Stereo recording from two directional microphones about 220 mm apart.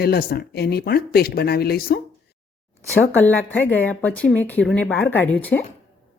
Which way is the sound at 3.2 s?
10° left (ahead or behind).